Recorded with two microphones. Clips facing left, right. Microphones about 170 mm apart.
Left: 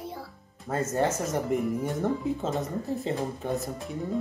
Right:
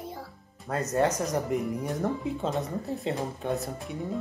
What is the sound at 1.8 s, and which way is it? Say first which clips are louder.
Speech: left 2 dB; centre (ahead or behind).